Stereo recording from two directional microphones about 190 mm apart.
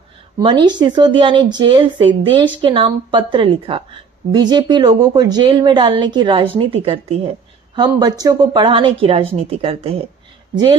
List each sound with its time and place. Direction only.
0.4 s a woman's voice: 25° right (ahead or behind)